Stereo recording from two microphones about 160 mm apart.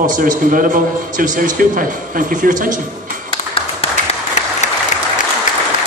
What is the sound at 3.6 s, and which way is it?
Tap, 35° left (ahead or behind).